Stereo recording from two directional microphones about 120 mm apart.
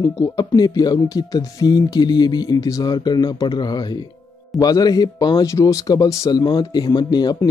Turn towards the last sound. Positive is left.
turn(degrees=35)  # may be behind; listen again after turning